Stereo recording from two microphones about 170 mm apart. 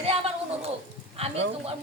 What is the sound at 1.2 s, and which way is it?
Speech, 35° right (ahead or behind).